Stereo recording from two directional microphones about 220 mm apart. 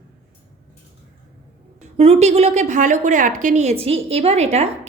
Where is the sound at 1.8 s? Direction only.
30° right (ahead or behind).